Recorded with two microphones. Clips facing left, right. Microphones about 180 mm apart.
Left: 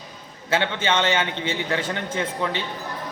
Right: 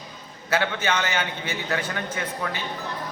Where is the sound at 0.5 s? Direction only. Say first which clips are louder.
Left 2 dB; 25° left (ahead or behind).